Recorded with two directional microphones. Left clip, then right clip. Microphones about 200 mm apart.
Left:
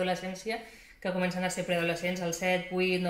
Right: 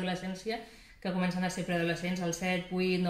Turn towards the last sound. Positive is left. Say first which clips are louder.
# left 3 dB
turn(degrees=10)  # may be behind; listen again after turning